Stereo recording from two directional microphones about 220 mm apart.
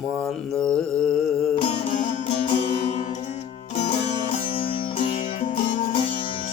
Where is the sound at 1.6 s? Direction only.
30° left (ahead or behind).